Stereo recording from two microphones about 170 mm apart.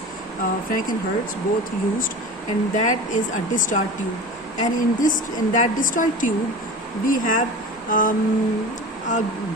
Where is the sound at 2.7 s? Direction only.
45° left (ahead or behind).